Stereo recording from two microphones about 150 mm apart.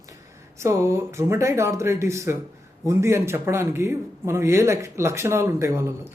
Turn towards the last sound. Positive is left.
turn(degrees=-20)  # may be behind; listen again after turning